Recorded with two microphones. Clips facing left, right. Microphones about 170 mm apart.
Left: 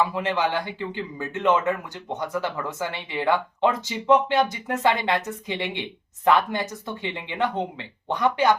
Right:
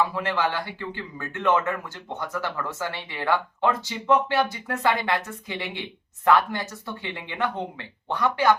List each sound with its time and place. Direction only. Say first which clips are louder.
0.1 s speech: left 2 dB; 20° left (ahead or behind)